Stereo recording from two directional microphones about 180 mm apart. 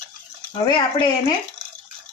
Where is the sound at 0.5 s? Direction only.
25° left (ahead or behind).